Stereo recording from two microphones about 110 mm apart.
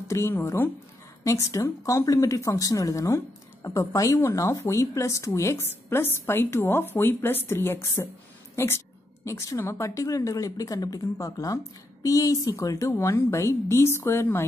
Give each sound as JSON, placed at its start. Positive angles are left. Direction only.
{"t": 0.1, "sound": "a woman's voice", "side_deg": 25}
{"t": 9.2, "sound": "a woman's voice", "side_deg": 25}